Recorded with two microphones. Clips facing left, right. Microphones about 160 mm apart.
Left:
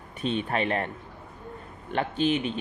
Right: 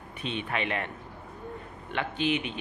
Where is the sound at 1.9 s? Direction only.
40° left (ahead or behind).